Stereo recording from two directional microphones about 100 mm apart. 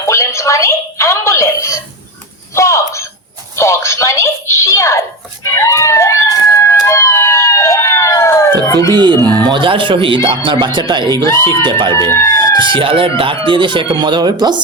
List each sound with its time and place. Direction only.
0.0 s a sound: 30° left (ahead or behind)
3.5 s telephone: 30° left (ahead or behind)
8.9 s speech: 45° right (ahead or behind)
9.2 s a sound: 15° left (ahead or behind)
9.5 s speech: 60° right (ahead or behind)
11.9 s speech: 30° left (ahead or behind)
12.5 s speech: 55° right (ahead or behind)